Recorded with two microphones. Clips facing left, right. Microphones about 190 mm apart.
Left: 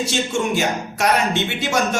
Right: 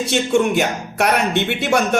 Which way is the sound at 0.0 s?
60° right (ahead or behind).